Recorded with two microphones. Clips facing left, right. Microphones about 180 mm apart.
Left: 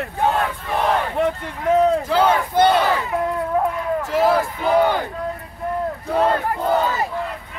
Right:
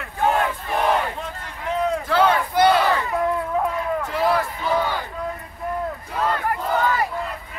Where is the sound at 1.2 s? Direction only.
65° left (ahead or behind).